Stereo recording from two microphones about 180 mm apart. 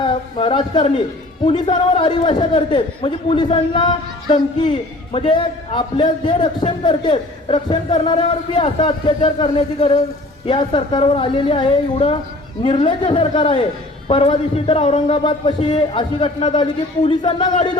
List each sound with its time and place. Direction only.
0.0 s a man's voice: 30° left (ahead or behind)